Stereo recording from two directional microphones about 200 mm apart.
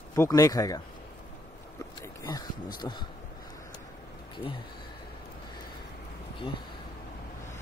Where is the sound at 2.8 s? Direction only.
20° left (ahead or behind).